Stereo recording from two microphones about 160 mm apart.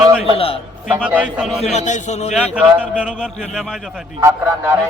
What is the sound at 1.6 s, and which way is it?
Speech, 45° left (ahead or behind).